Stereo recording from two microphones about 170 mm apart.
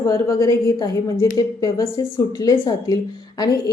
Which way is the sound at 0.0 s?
20° left (ahead or behind).